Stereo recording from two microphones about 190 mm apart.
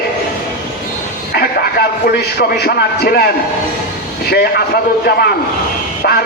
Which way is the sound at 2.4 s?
55° left (ahead or behind).